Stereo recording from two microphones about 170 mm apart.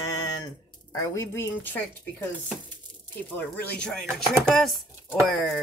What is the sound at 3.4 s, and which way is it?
Speech, 5° left (ahead or behind).